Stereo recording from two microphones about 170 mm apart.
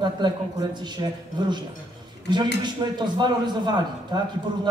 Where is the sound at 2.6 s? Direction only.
25° right (ahead or behind).